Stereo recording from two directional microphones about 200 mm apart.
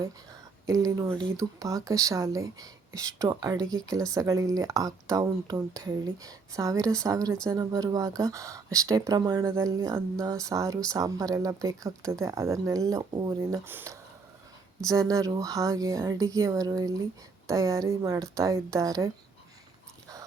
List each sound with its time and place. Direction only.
0.6 s speech: 15° right (ahead or behind)